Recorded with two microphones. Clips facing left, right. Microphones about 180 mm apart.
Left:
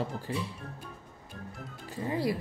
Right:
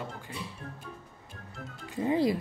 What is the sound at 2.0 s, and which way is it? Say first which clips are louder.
Speech: right 4 dB; 20° right (ahead or behind).